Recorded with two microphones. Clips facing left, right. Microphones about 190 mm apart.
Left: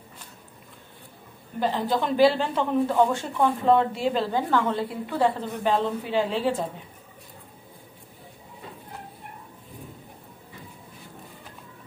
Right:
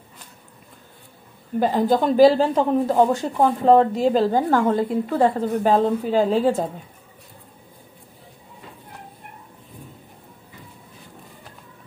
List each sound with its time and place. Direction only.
1.6 s speech: 45° right (ahead or behind)